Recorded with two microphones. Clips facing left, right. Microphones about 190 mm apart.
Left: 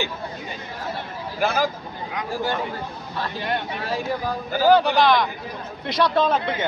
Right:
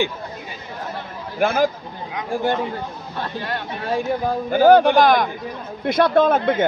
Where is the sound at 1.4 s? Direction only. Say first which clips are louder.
Right 4 dB; 55° right (ahead or behind).